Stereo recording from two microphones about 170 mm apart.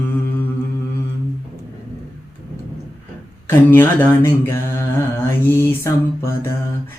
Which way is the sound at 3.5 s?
15° left (ahead or behind).